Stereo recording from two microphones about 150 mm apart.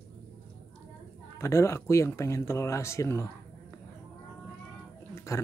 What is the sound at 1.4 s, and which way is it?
Speech, 20° left (ahead or behind).